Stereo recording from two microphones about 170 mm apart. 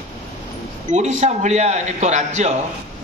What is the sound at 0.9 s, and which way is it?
A man's voice, 45° right (ahead or behind).